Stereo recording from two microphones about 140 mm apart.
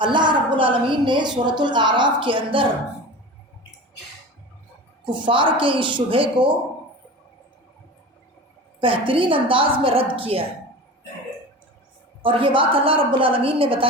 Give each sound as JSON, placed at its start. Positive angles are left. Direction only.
{"t": 0.0, "sound": "a woman's voice", "side_deg": -35}
{"t": 5.2, "sound": "a woman's voice", "side_deg": -35}
{"t": 8.8, "sound": "a woman's voice", "side_deg": -40}
{"t": 12.2, "sound": "a woman's voice", "side_deg": -40}